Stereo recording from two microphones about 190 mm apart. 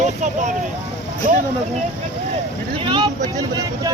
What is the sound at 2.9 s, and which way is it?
Vehicle, 25° right (ahead or behind).